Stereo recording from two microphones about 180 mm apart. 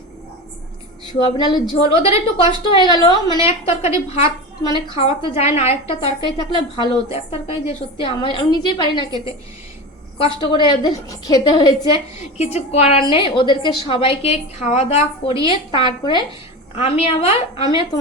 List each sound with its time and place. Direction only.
1.2 s a woman's voice: 25° left (ahead or behind)
10.2 s a woman's voice: 30° left (ahead or behind)
12.4 s a woman's voice: 35° left (ahead or behind)